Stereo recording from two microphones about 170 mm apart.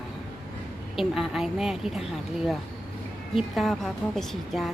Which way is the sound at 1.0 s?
Centre (ahead or behind).